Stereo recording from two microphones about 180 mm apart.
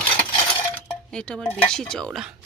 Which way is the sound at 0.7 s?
5° left (ahead or behind).